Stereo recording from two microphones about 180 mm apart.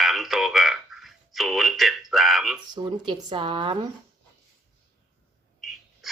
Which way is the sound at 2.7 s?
25° right (ahead or behind).